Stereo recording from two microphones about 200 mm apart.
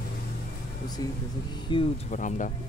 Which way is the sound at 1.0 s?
20° left (ahead or behind).